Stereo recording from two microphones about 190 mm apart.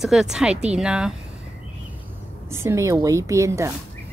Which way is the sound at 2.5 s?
15° right (ahead or behind).